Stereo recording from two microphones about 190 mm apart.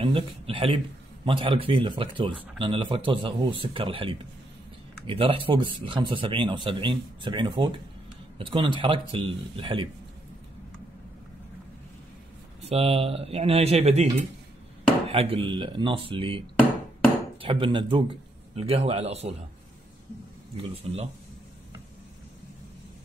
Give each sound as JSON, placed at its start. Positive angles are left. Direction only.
{"t": 0.0, "sound": "speech", "side_deg": -30}
{"t": 12.6, "sound": "speech", "side_deg": -30}
{"t": 15.0, "sound": "speech", "side_deg": -30}
{"t": 20.5, "sound": "speech", "side_deg": -30}